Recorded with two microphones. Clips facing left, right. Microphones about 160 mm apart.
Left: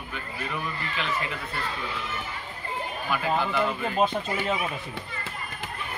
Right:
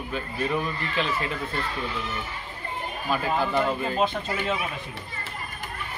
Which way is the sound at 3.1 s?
30° right (ahead or behind).